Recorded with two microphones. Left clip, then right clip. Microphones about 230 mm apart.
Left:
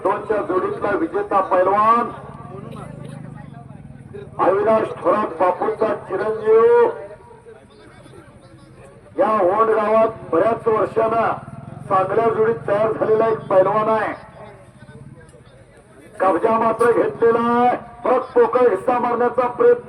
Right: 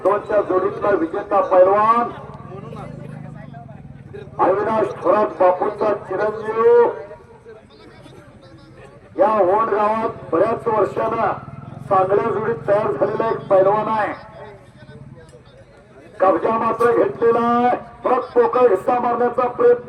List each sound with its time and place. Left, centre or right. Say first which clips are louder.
0.0 s a man's voice: right 3 dB; left
4.4 s a man's voice: left 1 dB; left
9.1 s a man's voice: right 1 dB; left
16.1 s a man's voice: even; left